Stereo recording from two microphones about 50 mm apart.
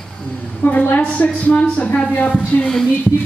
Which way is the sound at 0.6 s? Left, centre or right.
Left.